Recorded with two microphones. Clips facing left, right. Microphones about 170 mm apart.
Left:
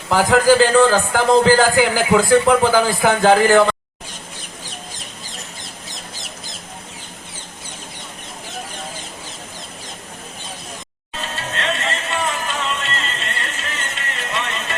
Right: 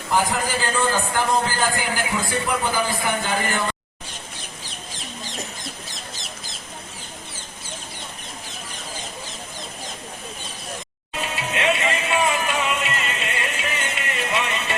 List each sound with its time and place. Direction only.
0.1 s a man's voice: 90° left
11.2 s music: 10° right (ahead or behind)